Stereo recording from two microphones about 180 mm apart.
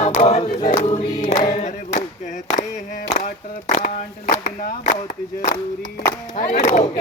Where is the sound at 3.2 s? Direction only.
45° left (ahead or behind).